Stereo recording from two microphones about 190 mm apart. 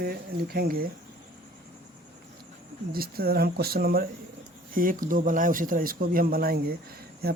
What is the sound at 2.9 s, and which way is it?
Speech, 50° right (ahead or behind).